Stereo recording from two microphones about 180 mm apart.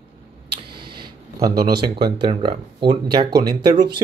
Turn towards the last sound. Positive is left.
turn(degrees=-25)  # may be behind; listen again after turning